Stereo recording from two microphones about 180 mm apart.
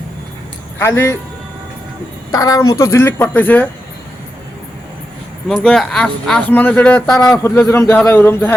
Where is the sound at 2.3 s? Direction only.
20° left (ahead or behind).